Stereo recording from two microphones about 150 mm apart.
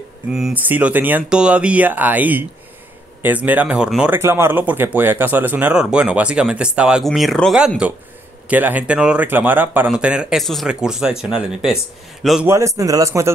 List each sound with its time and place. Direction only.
0.3 s speech: 5° right (ahead or behind)
12.4 s a man's voice: 20° right (ahead or behind)